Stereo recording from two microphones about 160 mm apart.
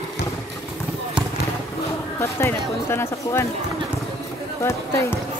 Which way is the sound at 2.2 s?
15° left (ahead or behind).